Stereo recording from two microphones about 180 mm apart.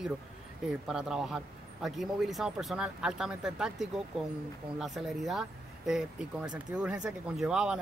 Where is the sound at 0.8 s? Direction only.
5° right (ahead or behind).